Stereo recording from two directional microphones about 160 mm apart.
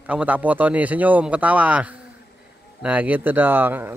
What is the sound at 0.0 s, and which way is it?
A man's voice, 10° right (ahead or behind).